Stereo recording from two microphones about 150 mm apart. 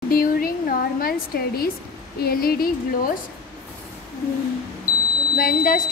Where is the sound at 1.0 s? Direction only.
85° left.